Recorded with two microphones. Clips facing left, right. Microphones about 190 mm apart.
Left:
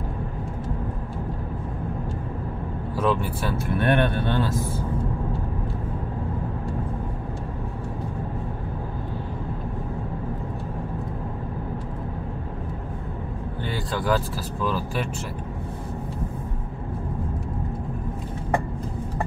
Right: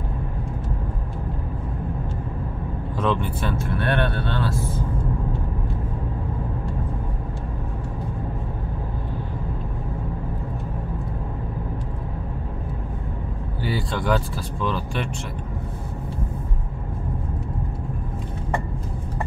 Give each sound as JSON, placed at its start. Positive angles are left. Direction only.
{"t": 3.0, "sound": "speech", "side_deg": 5}
{"t": 3.7, "sound": "speech", "side_deg": 15}
{"t": 13.7, "sound": "speech", "side_deg": 0}